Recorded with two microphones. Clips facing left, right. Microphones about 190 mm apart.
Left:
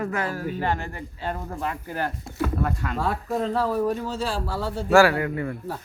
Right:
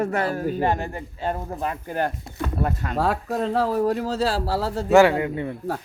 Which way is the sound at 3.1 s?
85° right.